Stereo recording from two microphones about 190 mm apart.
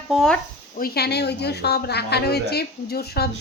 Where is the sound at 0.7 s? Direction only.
55° left (ahead or behind).